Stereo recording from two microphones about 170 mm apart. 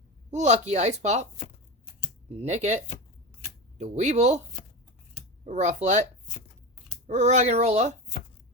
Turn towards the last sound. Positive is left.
turn(degrees=-40)  # may be behind; listen again after turning